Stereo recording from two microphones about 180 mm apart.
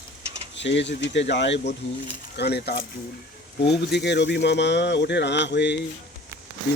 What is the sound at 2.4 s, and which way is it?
Speech, 65° left (ahead or behind).